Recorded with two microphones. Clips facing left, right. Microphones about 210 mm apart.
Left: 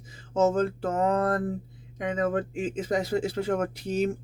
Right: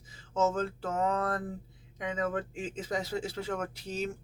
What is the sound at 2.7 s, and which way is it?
Speech, 15° left (ahead or behind).